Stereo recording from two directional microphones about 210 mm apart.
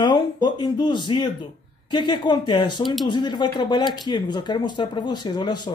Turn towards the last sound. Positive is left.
turn(degrees=20)  # may be behind; listen again after turning